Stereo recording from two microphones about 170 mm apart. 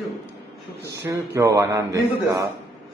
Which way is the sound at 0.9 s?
20° right (ahead or behind).